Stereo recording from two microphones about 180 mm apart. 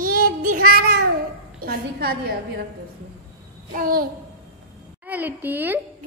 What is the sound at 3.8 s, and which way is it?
Speech, 55° right (ahead or behind).